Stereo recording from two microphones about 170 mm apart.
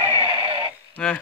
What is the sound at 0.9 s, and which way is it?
Speech, 10° left (ahead or behind).